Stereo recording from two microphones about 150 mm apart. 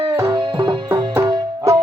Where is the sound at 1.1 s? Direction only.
20° right (ahead or behind).